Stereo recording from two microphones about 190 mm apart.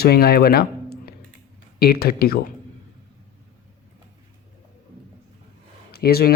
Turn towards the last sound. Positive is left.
turn(degrees=55)  # may be behind; listen again after turning